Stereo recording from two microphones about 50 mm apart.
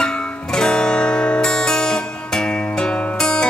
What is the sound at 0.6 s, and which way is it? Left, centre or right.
Music, centre.